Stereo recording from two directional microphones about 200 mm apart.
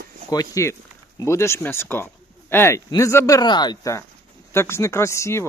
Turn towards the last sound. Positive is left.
turn(degrees=15)  # may be behind; listen again after turning